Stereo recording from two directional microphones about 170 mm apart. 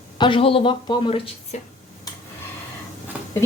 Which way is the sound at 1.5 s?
45° left (ahead or behind).